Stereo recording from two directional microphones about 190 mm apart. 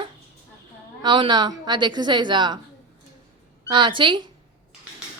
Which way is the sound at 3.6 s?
25° right (ahead or behind).